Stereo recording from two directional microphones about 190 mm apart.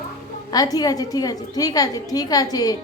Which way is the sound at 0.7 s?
20° left (ahead or behind).